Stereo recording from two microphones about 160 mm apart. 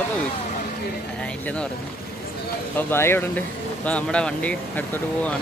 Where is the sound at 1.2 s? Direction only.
5° left (ahead or behind).